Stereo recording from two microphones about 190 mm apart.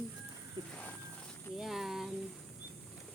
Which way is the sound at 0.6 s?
25° right (ahead or behind).